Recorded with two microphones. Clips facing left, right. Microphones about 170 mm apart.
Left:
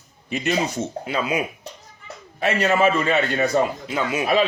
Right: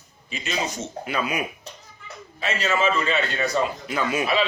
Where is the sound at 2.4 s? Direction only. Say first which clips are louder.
Left 5 dB; 60° left (ahead or behind).